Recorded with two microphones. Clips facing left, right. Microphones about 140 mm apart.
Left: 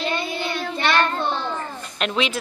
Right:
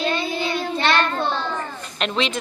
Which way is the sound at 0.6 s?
25° right (ahead or behind).